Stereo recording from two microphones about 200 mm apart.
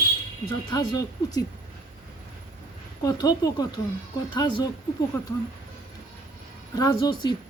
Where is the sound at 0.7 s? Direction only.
20° left (ahead or behind).